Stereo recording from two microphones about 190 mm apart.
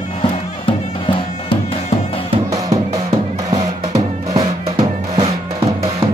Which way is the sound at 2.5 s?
15° right (ahead or behind).